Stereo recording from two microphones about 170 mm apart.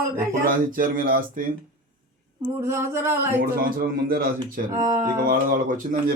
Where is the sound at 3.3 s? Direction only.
60° right (ahead or behind).